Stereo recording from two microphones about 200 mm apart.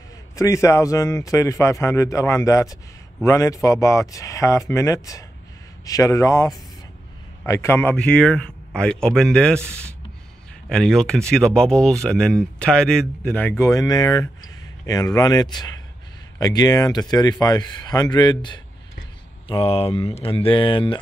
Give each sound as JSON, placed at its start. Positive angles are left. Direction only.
{"t": 0.4, "sound": "a man's voice", "side_deg": 15}